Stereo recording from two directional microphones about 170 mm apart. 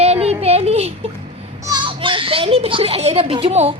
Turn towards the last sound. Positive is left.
turn(degrees=-40)  # may be behind; listen again after turning